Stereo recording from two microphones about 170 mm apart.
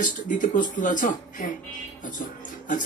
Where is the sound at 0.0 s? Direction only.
50° left (ahead or behind).